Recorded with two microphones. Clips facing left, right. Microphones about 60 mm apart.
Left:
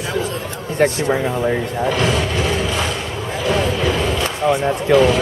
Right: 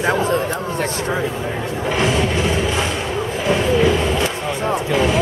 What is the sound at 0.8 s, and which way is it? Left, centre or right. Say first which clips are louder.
Speech: left 10 dB; left.